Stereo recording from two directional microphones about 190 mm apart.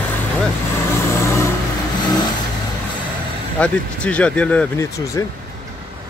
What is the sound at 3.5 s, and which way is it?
Speech, 5° left (ahead or behind).